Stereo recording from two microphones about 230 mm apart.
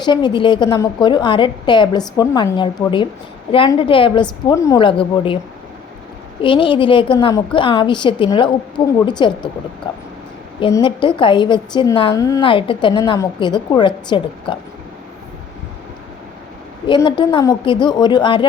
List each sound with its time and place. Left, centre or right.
0.0 s a woman's voice: centre
6.4 s a woman's voice: left
16.8 s a woman's voice: left